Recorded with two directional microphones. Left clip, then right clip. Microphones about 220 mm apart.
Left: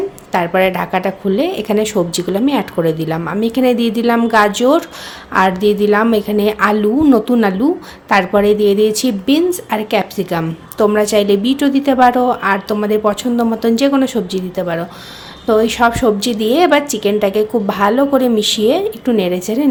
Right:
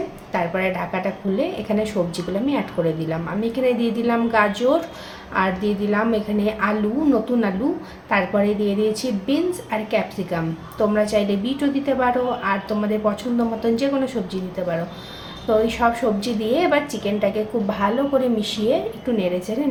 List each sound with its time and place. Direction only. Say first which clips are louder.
0.3 s a woman's voice: left 9 dB; 55° left (ahead or behind)